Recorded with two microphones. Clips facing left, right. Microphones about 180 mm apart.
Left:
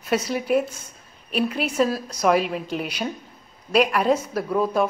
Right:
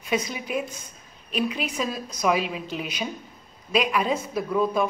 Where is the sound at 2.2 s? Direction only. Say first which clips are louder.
Left 4 dB; 45° left (ahead or behind).